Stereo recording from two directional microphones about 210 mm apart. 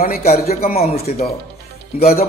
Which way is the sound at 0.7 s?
30° left (ahead or behind).